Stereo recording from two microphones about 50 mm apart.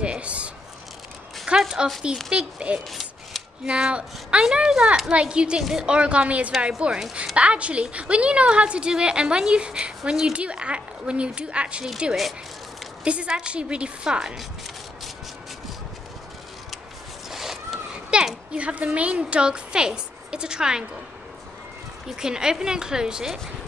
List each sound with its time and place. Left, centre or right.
0.0 s a sound: right
1.5 s a sound: right
2.1 s a woman's voice: centre
2.9 s rub: centre
3.6 s a woman's voice: right
5.6 s speech: centre
5.9 s a woman's voice: right
17.3 s zipper: centre
18.1 s speech: centre
22.1 s speech: centre